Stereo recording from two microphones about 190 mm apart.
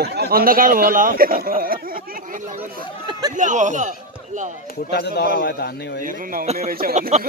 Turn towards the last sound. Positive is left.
turn(degrees=-40)  # may be behind; listen again after turning